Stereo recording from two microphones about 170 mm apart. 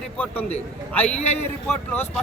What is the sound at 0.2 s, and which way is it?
Speech, 10° left (ahead or behind).